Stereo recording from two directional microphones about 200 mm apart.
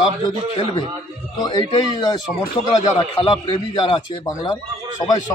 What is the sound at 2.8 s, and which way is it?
A man's voice, 25° left (ahead or behind).